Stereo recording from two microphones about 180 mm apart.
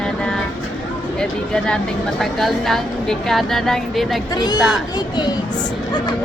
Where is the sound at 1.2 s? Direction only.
5° left (ahead or behind).